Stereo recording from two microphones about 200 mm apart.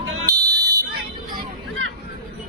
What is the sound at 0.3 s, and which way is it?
Fire alarm, 20° right (ahead or behind).